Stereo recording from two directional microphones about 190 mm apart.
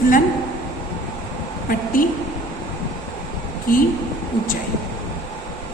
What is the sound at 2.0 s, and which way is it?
Speech, 45° left (ahead or behind).